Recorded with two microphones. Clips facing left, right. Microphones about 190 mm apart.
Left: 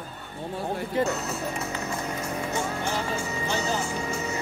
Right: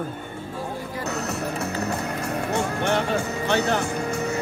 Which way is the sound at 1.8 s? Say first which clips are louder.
Right 4 dB; 65° right (ahead or behind).